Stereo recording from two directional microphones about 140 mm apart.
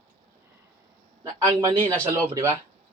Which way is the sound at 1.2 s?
25° right (ahead or behind).